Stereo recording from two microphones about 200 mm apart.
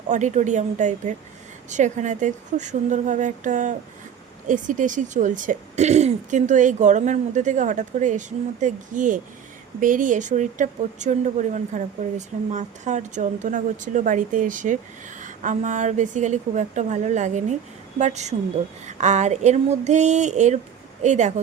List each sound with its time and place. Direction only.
0.1 s a woman's voice: 35° right (ahead or behind)